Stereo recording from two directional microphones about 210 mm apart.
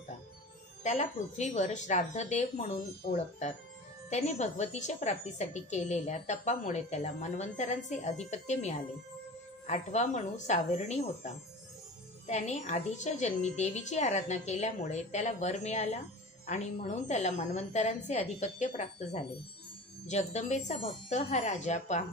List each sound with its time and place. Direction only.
0.8 s a woman's voice: 35° left (ahead or behind)